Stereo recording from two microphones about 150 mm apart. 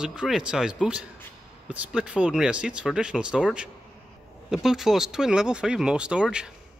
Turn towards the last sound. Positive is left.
turn(degrees=-5)  # may be behind; listen again after turning